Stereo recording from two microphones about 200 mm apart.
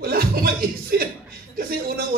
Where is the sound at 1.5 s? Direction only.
45° right (ahead or behind).